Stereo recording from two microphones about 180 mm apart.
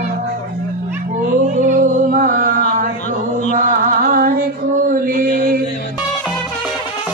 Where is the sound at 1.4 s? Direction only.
45° right (ahead or behind).